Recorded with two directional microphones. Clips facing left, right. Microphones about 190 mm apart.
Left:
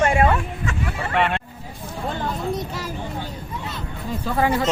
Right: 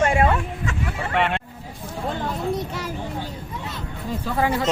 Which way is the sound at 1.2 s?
15° right (ahead or behind).